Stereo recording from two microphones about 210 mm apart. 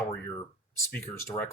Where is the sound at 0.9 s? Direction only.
10° left (ahead or behind).